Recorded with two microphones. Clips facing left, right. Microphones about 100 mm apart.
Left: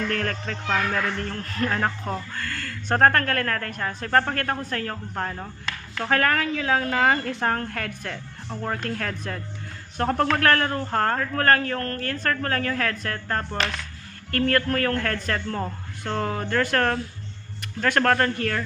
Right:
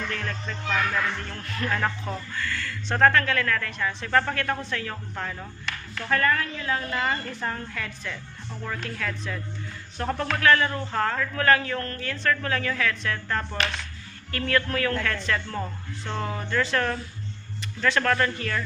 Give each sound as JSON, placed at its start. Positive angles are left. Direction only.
{"t": 0.1, "sound": "a man's voice", "side_deg": 65}
{"t": 5.9, "sound": "a woman's voice", "side_deg": 65}
{"t": 14.3, "sound": "a man's voice", "side_deg": 50}